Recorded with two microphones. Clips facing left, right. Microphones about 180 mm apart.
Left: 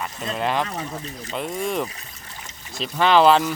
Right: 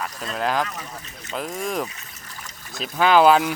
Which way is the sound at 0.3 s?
Centre (ahead or behind).